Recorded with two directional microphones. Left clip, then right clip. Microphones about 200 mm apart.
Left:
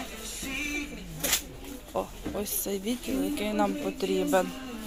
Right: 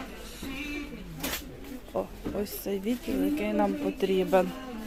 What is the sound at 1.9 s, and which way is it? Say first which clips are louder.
Speech: even; 10° right (ahead or behind).